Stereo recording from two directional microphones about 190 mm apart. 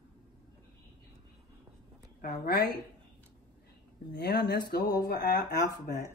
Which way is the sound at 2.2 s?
55° left (ahead or behind).